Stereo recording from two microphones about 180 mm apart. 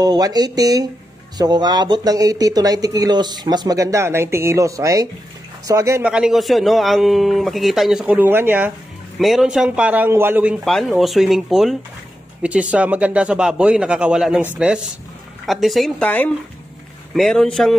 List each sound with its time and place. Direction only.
0.0 s speech: 20° right (ahead or behind)
6.1 s a man's voice: centre (ahead or behind)